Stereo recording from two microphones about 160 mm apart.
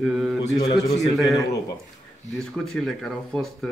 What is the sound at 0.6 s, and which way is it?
Speech, 25° left (ahead or behind).